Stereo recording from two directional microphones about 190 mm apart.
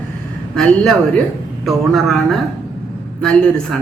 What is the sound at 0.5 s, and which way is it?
Speech, 5° left (ahead or behind).